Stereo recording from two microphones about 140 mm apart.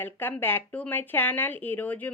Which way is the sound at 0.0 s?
15° left (ahead or behind).